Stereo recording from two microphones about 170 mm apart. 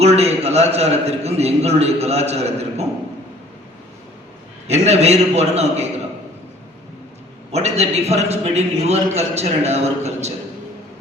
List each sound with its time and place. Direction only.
0.0 s a man's voice: 40° right (ahead or behind)
4.7 s a man's voice: 40° right (ahead or behind)
7.5 s a man's voice: 40° right (ahead or behind)